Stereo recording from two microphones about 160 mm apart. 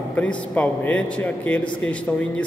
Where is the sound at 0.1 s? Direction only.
10° left (ahead or behind).